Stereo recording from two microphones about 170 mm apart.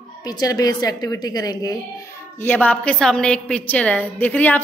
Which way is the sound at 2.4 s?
10° left (ahead or behind).